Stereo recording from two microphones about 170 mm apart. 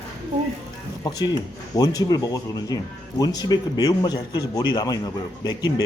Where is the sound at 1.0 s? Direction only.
25° left (ahead or behind).